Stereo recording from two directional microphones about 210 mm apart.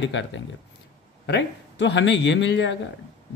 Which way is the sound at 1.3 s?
55° left (ahead or behind).